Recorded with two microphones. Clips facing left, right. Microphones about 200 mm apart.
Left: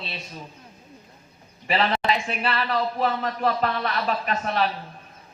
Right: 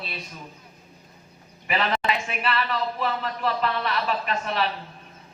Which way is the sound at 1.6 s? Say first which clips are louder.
Left 2 dB; 30° left (ahead or behind).